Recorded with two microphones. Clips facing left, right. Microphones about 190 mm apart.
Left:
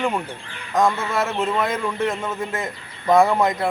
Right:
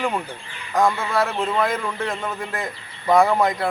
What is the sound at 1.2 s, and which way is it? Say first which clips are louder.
A man's voice: even; 5° left (ahead or behind).